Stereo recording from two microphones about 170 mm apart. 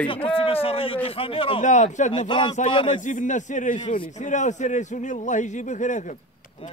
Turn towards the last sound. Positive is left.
turn(degrees=45)  # may be behind; listen again after turning